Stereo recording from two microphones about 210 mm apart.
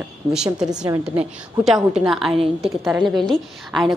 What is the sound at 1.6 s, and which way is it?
A woman's voice, centre (ahead or behind).